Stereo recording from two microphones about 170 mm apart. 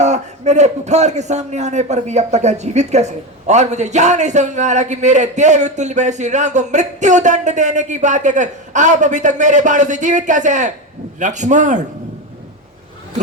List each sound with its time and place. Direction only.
0.0 s a man's voice: 40° right (ahead or behind)